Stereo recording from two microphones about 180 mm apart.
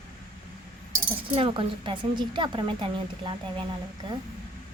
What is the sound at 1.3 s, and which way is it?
A woman's voice, 30° right (ahead or behind).